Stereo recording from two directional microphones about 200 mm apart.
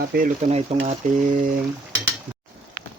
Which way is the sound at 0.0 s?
45° right (ahead or behind).